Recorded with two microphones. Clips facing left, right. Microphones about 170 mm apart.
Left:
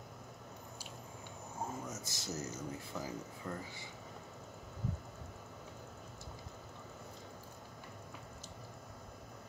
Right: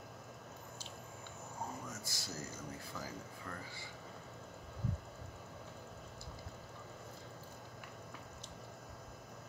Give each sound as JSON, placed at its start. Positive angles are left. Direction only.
{"t": 1.9, "sound": "speech", "side_deg": 20}